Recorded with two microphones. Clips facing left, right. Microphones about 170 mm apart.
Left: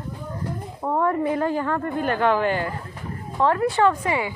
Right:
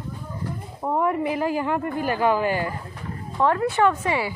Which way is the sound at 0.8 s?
5° right (ahead or behind).